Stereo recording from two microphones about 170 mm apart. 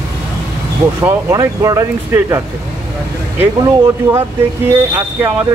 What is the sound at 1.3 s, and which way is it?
Speech, 20° right (ahead or behind).